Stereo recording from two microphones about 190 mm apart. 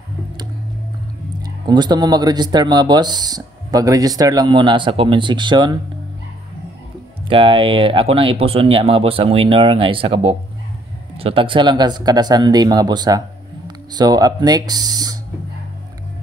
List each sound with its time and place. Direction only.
1.7 s speech: 20° right (ahead or behind)
7.2 s speech: 25° right (ahead or behind)